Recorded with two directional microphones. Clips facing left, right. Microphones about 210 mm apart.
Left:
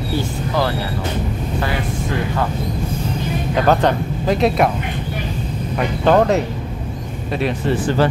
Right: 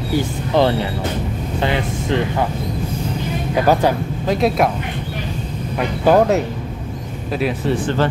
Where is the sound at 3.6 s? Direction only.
10° right (ahead or behind).